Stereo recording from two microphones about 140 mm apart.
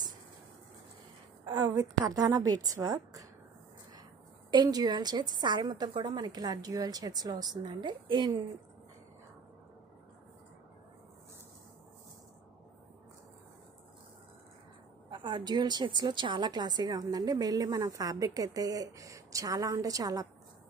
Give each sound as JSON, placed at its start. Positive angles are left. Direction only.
{"t": 1.4, "sound": "a woman's voice", "side_deg": -30}
{"t": 4.5, "sound": "a woman's voice", "side_deg": -30}
{"t": 15.0, "sound": "a woman's voice", "side_deg": -35}